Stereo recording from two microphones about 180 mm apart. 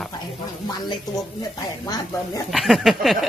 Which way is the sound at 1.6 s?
20° left (ahead or behind).